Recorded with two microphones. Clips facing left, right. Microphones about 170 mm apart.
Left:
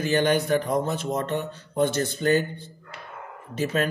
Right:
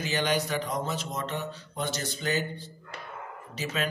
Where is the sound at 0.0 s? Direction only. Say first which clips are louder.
Left 6 dB; 55° left (ahead or behind).